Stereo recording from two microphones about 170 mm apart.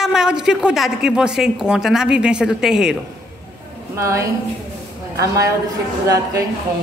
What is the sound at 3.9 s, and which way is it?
A woman's voice, 15° right (ahead or behind).